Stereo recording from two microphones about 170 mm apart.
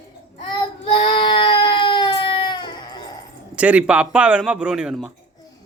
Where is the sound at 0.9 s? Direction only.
30° left (ahead or behind).